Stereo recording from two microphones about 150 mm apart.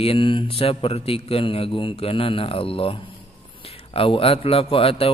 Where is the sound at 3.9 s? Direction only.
40° left (ahead or behind).